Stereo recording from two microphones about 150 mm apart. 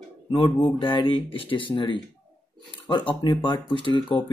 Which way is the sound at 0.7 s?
35° left (ahead or behind).